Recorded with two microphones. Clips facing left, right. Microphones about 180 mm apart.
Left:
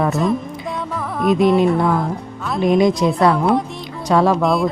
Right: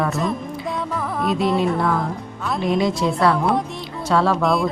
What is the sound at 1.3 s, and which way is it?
Speech, 15° left (ahead or behind).